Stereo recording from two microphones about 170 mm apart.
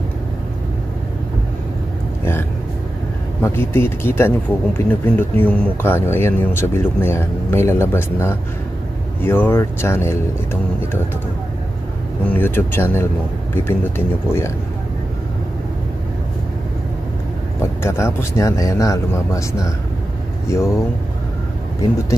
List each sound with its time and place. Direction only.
3.4 s speech: 15° left (ahead or behind)
4.5 s speech: 5° right (ahead or behind)
5.3 s speech: 10° left (ahead or behind)
12.3 s speech: 10° left (ahead or behind)
17.8 s speech: 15° left (ahead or behind)